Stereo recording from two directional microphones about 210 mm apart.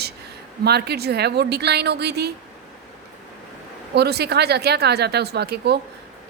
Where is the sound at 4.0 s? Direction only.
50° right (ahead or behind).